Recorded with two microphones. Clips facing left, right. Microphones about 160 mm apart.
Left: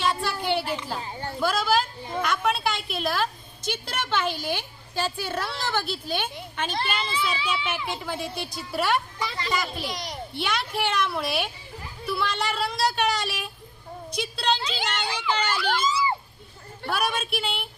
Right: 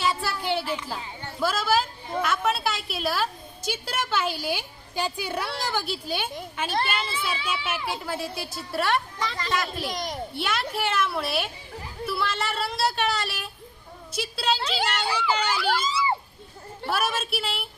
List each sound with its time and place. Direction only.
0.0 s a sound: 5° right (ahead or behind)
0.9 s speech: 35° left (ahead or behind)
1.4 s a sound: 5° right (ahead or behind)
2.2 s a woman's voice: centre (ahead or behind)
9.9 s a child's voice: 45° right (ahead or behind)
10.3 s speech: centre (ahead or behind)
14.6 s speech: 60° right (ahead or behind)
14.8 s speech: 10° right (ahead or behind)
15.7 s a sound: 30° right (ahead or behind)
16.9 s speech: centre (ahead or behind)